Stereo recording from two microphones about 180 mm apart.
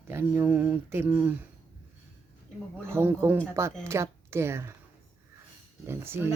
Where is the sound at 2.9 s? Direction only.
15° right (ahead or behind).